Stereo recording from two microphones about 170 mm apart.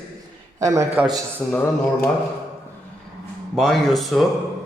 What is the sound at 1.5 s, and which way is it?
Speech, 10° left (ahead or behind).